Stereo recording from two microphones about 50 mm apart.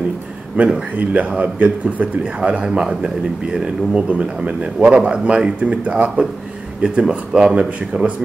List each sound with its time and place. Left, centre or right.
0.6 s speech: right